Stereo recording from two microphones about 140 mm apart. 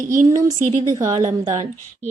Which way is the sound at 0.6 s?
55° right (ahead or behind).